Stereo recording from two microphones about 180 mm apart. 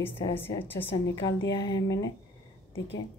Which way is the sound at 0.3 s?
10° left (ahead or behind).